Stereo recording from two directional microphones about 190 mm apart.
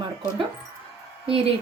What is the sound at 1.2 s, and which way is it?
Speech, 30° right (ahead or behind).